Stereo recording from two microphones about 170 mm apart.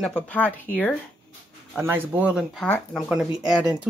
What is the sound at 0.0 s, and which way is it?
Speech, 5° left (ahead or behind).